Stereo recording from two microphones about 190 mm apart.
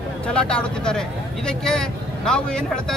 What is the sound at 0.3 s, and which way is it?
A man's voice, 5° left (ahead or behind).